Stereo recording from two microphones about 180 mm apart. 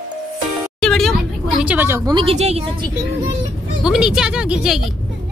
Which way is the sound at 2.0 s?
25° right (ahead or behind).